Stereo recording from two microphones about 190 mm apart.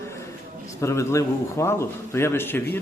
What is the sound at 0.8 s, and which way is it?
A man's voice, 15° left (ahead or behind).